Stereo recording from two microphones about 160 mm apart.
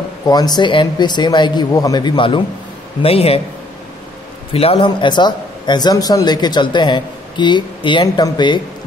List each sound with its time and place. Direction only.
0.3 s a man's voice: 25° left (ahead or behind)
4.6 s a man's voice: 35° left (ahead or behind)